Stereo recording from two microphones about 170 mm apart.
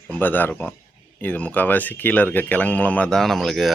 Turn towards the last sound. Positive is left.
turn(degrees=0)  # may be behind; listen again after turning